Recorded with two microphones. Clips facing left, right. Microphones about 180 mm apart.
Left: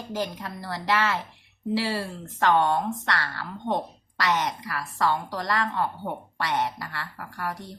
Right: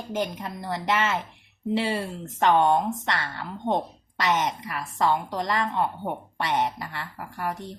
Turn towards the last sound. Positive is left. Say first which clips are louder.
# right 2 dB
turn(degrees=-25)  # may be behind; listen again after turning